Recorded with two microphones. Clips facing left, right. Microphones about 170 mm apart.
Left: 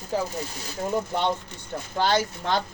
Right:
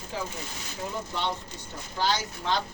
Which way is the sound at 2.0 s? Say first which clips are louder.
Left 5 dB; 55° left (ahead or behind).